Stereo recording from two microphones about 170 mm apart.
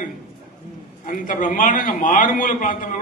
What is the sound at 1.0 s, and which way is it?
A man's voice, 50° left (ahead or behind).